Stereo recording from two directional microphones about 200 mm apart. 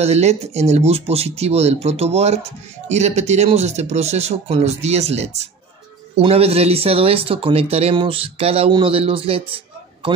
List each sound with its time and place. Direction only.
0.0 s speech: 35° right (ahead or behind)